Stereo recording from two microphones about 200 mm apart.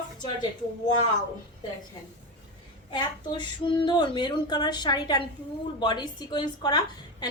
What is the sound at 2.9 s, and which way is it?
A woman's voice, 20° left (ahead or behind).